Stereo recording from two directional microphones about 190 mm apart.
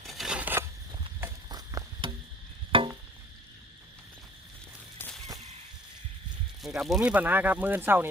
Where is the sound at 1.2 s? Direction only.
20° right (ahead or behind).